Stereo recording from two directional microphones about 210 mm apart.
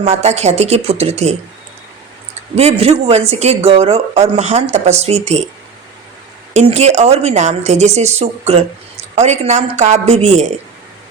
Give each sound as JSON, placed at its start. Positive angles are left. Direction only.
{"t": 0.0, "sound": "a woman's voice", "side_deg": -30}
{"t": 2.6, "sound": "a woman's voice", "side_deg": -30}
{"t": 6.5, "sound": "a woman's voice", "side_deg": -30}